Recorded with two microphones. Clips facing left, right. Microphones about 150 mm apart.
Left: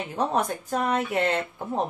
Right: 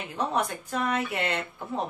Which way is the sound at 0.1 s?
40° left (ahead or behind).